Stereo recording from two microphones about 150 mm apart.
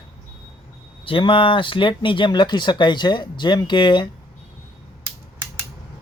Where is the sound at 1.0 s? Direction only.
35° left (ahead or behind).